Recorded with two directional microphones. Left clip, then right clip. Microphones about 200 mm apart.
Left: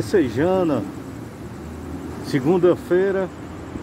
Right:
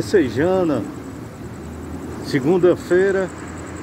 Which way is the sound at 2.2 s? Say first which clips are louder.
Right 2 dB; 15° left (ahead or behind).